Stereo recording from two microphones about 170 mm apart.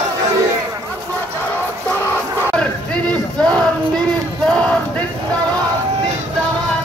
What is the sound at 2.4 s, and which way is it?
Battle cry, 5° left (ahead or behind).